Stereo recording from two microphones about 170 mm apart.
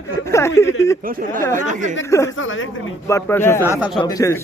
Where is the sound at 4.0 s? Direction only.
20° left (ahead or behind).